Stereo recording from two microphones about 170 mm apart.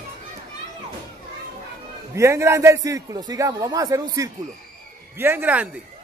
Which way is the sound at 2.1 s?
15° right (ahead or behind).